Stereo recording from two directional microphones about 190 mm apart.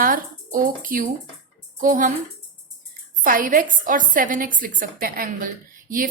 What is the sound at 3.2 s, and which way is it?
A woman's voice, 45° right (ahead or behind).